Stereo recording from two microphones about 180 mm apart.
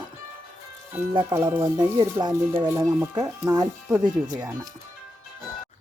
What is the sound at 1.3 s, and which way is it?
Speech, 15° right (ahead or behind).